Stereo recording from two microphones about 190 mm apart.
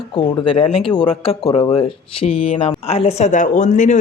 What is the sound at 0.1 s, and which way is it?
Speech, 30° left (ahead or behind).